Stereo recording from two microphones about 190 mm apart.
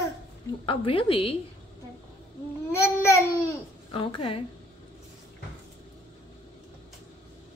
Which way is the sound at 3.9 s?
30° left (ahead or behind).